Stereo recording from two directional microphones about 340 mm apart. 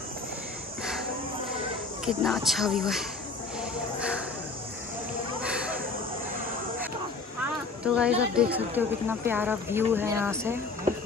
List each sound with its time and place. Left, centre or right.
2.0 s speech: centre
5.4 s a sound: centre
7.8 s speech: centre